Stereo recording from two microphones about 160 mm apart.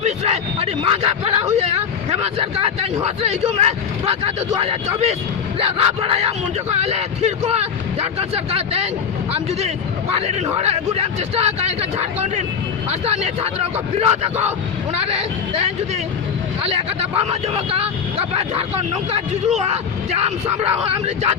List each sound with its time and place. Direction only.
0.0 s a man's voice: 40° right (ahead or behind)
16.6 s a man's voice: 40° right (ahead or behind)